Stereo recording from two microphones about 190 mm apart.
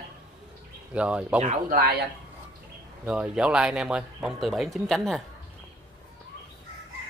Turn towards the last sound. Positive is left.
turn(degrees=0)  # may be behind; listen again after turning